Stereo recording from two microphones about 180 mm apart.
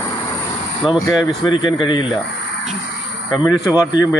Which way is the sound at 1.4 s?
25° left (ahead or behind).